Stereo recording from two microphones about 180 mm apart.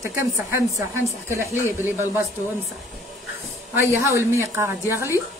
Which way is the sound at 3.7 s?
15° right (ahead or behind).